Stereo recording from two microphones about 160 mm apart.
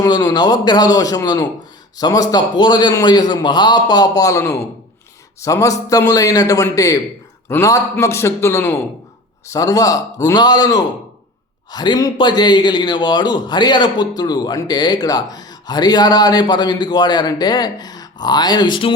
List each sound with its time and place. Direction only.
0.0 s a man's voice: 20° left (ahead or behind)